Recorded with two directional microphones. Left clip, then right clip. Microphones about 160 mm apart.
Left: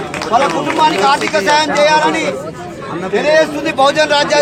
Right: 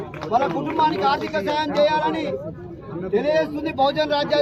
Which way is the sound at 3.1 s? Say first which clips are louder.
Left 9 dB; 15° left (ahead or behind).